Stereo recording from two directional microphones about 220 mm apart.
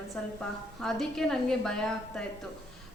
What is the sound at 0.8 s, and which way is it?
A woman's voice, centre (ahead or behind).